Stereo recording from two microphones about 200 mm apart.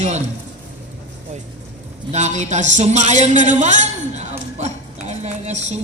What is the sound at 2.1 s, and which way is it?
A man's voice, 35° right (ahead or behind).